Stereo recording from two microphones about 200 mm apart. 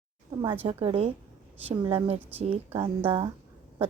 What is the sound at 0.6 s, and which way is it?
A woman's voice, 30° right (ahead or behind).